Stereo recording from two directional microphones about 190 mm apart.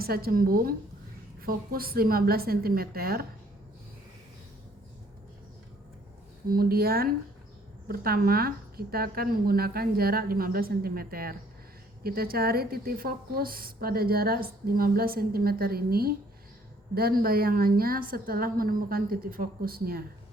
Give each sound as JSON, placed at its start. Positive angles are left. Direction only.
{"t": 0.0, "sound": "a woman's voice", "side_deg": -50}
{"t": 6.5, "sound": "a woman's voice", "side_deg": -50}